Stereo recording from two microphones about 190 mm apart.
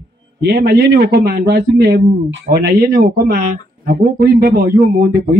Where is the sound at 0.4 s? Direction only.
60° right (ahead or behind).